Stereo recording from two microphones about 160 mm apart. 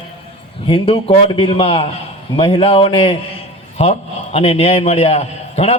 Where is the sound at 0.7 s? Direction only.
35° left (ahead or behind).